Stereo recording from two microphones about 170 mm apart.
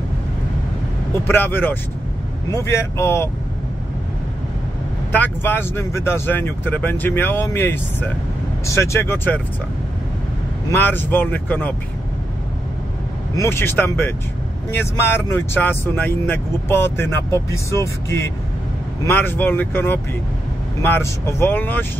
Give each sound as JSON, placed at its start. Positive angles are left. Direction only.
{"t": 1.2, "sound": "speech", "side_deg": 10}
{"t": 5.1, "sound": "speech", "side_deg": 10}
{"t": 10.7, "sound": "speech", "side_deg": 10}
{"t": 13.4, "sound": "speech", "side_deg": 15}